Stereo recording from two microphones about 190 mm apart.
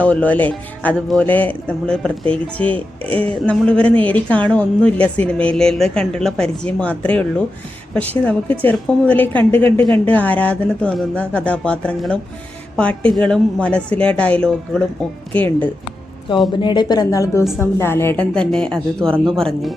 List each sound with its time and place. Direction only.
0.0 s a woman's voice: 5° left (ahead or behind)
16.5 s a woman's voice: 25° left (ahead or behind); by 19.7 s centre (ahead or behind)